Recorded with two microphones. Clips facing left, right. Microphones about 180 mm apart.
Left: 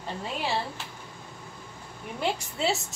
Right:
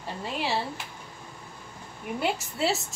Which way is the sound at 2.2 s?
Centre (ahead or behind).